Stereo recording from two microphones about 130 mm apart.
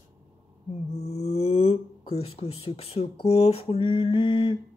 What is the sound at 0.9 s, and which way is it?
Speech, 55° left (ahead or behind).